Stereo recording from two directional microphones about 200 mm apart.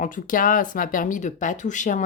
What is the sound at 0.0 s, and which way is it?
Speech, 40° left (ahead or behind).